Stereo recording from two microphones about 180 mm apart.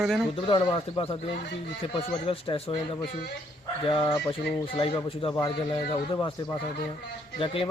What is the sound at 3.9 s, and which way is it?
A man's voice, 30° left (ahead or behind).